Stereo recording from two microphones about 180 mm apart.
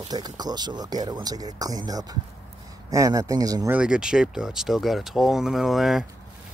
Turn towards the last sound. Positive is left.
turn(degrees=0)  # may be behind; listen again after turning